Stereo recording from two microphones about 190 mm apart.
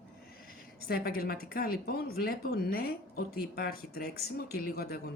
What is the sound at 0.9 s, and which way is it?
A woman's voice, 55° left (ahead or behind).